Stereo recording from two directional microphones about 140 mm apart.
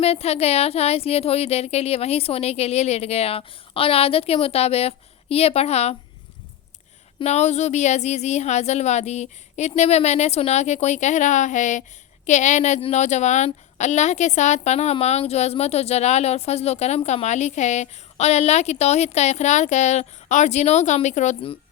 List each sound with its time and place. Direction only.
0.0 s a woman's voice: 45° left (ahead or behind)
7.2 s a woman's voice: 50° left (ahead or behind)